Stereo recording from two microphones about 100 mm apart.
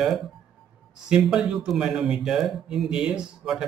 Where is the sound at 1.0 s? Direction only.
10° right (ahead or behind).